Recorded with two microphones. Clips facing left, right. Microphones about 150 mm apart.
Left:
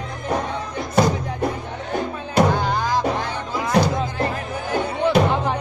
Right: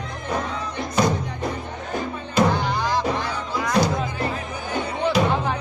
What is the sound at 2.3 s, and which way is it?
Music, 45° left (ahead or behind).